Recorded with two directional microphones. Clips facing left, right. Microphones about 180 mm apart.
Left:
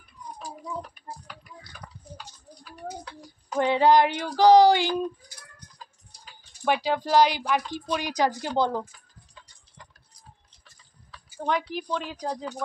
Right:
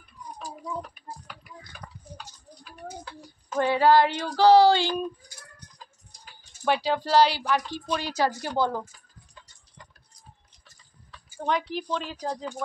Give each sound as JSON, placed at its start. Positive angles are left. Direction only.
{"t": 3.5, "sound": "a woman's voice", "side_deg": 20}
{"t": 6.6, "sound": "a woman's voice", "side_deg": 10}
{"t": 11.4, "sound": "a woman's voice", "side_deg": 10}